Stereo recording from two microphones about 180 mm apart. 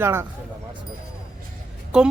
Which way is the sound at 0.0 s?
15° right (ahead or behind).